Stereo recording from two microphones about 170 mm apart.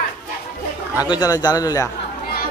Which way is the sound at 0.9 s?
25° left (ahead or behind).